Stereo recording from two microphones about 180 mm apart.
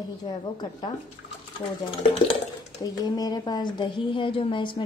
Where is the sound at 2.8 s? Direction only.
20° left (ahead or behind).